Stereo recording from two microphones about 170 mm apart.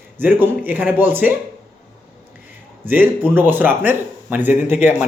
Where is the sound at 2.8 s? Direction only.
10° right (ahead or behind).